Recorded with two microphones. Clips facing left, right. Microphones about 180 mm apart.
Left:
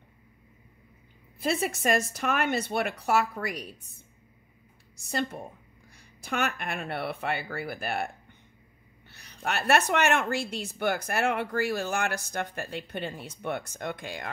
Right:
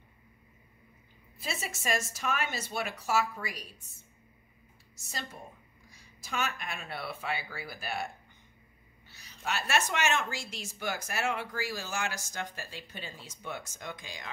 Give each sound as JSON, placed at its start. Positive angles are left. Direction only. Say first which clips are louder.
{"t": 1.4, "sound": "speech", "louder": "left 10 dB", "side_deg": 60}
{"t": 4.9, "sound": "speech", "louder": "left 11 dB", "side_deg": 60}
{"t": 9.1, "sound": "speech", "louder": "left 4 dB", "side_deg": 60}